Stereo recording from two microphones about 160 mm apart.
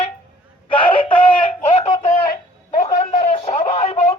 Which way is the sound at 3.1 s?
35° left (ahead or behind).